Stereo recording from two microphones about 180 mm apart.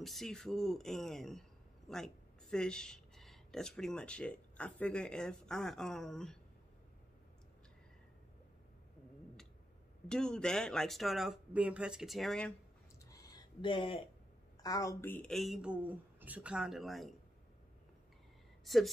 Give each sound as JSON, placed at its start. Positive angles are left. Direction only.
{"t": 0.0, "sound": "speech", "side_deg": 0}
{"t": 10.0, "sound": "speech", "side_deg": 5}
{"t": 13.0, "sound": "a sound", "side_deg": 20}
{"t": 14.6, "sound": "speech", "side_deg": 20}
{"t": 18.6, "sound": "a woman's voice", "side_deg": 0}